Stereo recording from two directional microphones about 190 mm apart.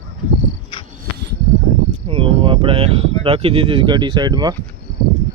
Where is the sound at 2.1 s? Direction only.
30° right (ahead or behind).